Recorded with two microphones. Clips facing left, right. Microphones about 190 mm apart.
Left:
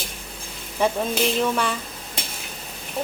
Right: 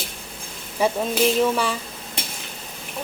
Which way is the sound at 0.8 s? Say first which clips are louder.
Right 1 dB; 5° right (ahead or behind).